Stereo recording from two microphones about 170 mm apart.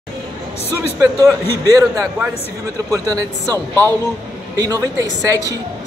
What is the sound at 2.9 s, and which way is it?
Speech, 20° right (ahead or behind).